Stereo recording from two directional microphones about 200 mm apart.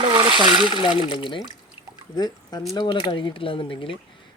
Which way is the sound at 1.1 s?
25° left (ahead or behind).